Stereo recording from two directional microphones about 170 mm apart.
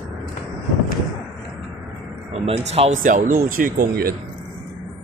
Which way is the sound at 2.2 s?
35° right (ahead or behind).